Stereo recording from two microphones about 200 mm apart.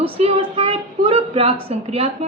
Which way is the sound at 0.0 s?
25° right (ahead or behind).